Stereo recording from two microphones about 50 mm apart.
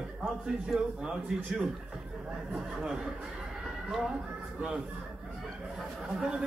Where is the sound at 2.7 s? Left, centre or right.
Centre.